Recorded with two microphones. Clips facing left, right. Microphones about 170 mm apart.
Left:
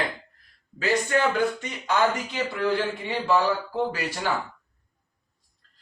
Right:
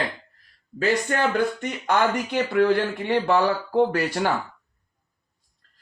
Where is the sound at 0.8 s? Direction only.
50° right (ahead or behind).